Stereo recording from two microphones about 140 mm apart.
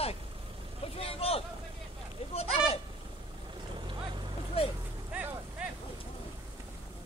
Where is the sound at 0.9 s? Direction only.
45° left (ahead or behind).